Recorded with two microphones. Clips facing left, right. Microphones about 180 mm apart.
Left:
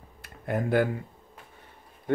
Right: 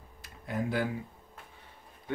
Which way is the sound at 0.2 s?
55° left (ahead or behind).